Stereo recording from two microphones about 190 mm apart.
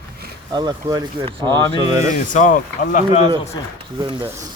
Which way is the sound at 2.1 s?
40° left (ahead or behind).